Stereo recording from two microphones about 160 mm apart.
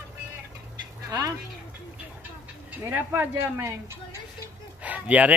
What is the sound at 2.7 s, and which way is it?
Speech, 10° right (ahead or behind).